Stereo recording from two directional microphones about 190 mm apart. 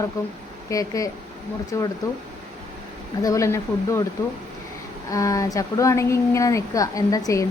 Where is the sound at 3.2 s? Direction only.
15° left (ahead or behind).